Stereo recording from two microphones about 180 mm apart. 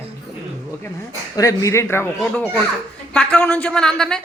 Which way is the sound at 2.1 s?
5° left (ahead or behind).